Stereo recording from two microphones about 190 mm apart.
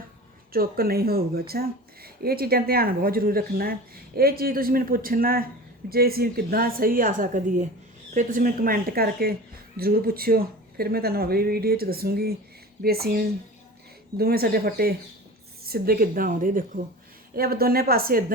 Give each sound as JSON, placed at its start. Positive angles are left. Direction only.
{"t": 0.5, "sound": "speech", "side_deg": -50}